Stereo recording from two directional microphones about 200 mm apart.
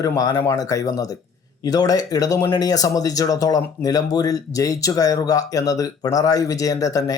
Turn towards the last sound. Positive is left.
turn(degrees=15)  # may be behind; listen again after turning